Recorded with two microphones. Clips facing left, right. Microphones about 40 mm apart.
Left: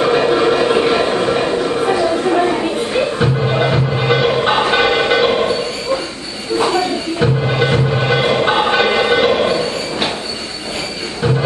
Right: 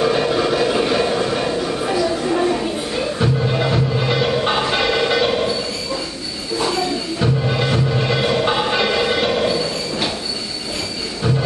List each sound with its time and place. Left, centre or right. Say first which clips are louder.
0.0 s train: left 4 dB; left
6.6 s music: left 4 dB; left